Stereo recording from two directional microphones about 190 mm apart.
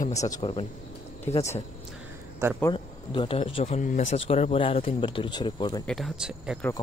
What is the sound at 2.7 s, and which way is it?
Speech, 25° left (ahead or behind).